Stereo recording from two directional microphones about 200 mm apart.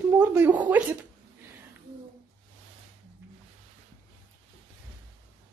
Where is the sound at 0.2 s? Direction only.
10° right (ahead or behind).